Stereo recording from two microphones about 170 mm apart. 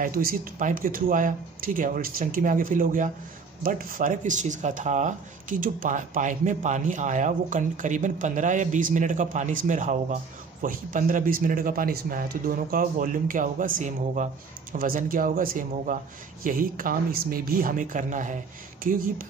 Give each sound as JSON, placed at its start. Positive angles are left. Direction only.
{"t": 0.0, "sound": "speech", "side_deg": -60}